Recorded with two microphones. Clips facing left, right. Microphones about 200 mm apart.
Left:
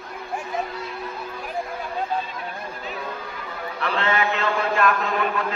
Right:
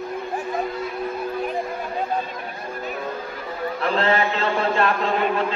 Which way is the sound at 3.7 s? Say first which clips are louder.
Right 3 dB; 35° right (ahead or behind).